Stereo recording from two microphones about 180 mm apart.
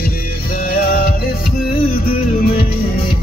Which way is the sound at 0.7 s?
55° left (ahead or behind).